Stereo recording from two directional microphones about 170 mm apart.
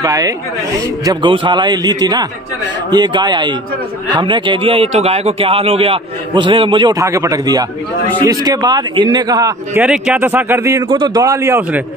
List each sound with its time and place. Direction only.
0.0 s a man's voice: 20° right (ahead or behind)
9.8 s a man's voice: 5° right (ahead or behind)